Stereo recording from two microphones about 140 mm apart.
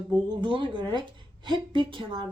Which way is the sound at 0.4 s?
35° right (ahead or behind).